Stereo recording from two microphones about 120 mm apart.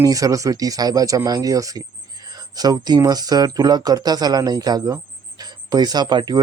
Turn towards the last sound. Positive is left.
turn(degrees=-35)  # may be behind; listen again after turning